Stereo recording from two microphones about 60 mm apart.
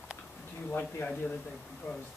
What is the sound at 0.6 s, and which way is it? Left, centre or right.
Speech, left.